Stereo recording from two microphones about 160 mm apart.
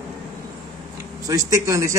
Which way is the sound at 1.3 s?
20° right (ahead or behind).